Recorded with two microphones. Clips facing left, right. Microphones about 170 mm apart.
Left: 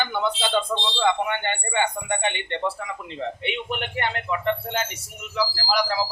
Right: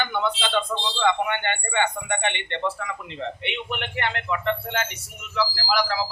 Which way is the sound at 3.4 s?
40° left (ahead or behind).